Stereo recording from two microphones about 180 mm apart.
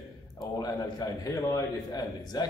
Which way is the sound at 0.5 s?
20° left (ahead or behind).